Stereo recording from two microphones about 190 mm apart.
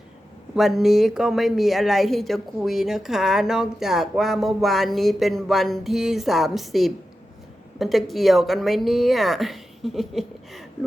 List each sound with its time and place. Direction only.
0.5 s a woman's voice: centre (ahead or behind)